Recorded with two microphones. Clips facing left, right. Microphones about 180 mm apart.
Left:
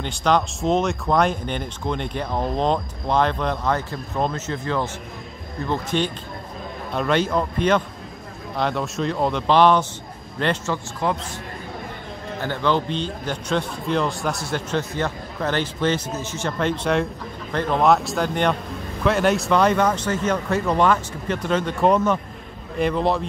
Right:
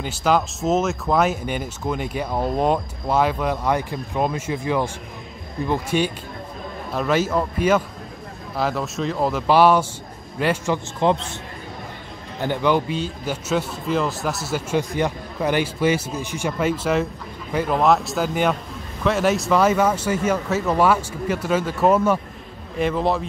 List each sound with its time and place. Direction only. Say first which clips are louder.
0.0 s a man's voice: even; 5° right (ahead or behind); by 11.2 s 25° right (ahead or behind)
12.4 s a man's voice: right 2 dB; 15° right (ahead or behind)